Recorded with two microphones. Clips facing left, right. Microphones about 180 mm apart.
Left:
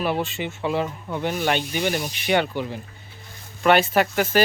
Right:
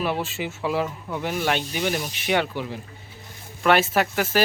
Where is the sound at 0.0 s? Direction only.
Centre (ahead or behind).